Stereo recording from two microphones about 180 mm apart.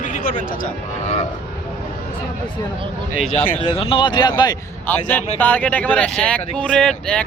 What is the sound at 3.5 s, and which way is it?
Speech, 30° left (ahead or behind).